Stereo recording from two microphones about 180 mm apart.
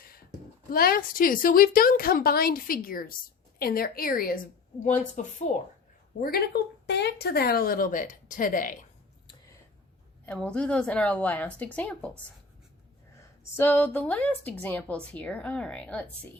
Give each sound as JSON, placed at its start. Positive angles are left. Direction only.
{"t": 0.7, "sound": "a woman's voice", "side_deg": 55}
{"t": 6.1, "sound": "speech", "side_deg": 55}
{"t": 10.2, "sound": "a woman's voice", "side_deg": 5}
{"t": 13.1, "sound": "a woman's voice", "side_deg": 10}